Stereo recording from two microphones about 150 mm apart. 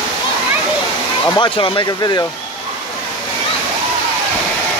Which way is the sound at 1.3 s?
30° left (ahead or behind).